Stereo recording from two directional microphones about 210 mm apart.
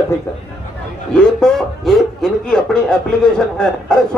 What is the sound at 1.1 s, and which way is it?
A man's voice, 5° left (ahead or behind).